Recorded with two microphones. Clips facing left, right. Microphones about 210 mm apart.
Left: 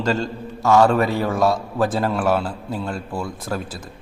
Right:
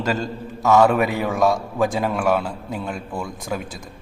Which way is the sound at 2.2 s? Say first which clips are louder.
Even; 15° right (ahead or behind).